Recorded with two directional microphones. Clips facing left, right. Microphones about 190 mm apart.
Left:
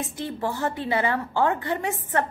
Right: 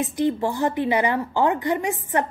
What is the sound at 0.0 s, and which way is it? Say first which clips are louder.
A woman's voice: right 7 dB; 15° right (ahead or behind).